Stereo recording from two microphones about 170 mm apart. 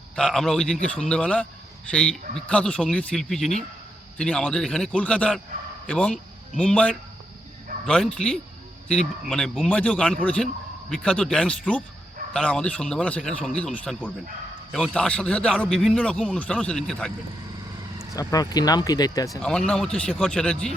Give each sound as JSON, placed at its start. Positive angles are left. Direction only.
{"t": 0.2, "sound": "a man's voice", "side_deg": 0}
{"t": 18.1, "sound": "speech", "side_deg": 20}
{"t": 19.4, "sound": "a man's voice", "side_deg": 5}